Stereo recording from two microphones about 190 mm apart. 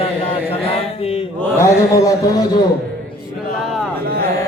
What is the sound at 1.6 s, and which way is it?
Speech, 15° left (ahead or behind).